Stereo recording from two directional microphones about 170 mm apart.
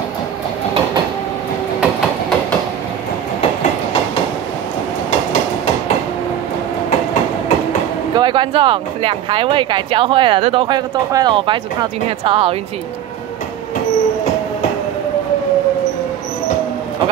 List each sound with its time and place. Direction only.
8.1 s speech: 25° right (ahead or behind)